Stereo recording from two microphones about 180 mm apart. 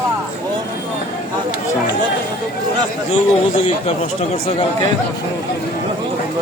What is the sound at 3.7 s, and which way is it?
Speech, 35° left (ahead or behind).